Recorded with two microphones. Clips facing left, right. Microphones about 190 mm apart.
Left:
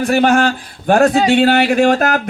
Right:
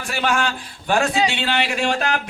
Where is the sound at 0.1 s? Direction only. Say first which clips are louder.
Left 8 dB; 55° left (ahead or behind).